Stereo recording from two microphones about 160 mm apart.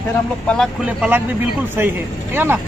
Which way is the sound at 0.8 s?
5° right (ahead or behind).